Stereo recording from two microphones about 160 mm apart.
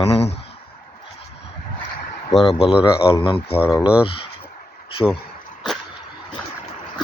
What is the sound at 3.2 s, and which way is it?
Speech, 35° left (ahead or behind).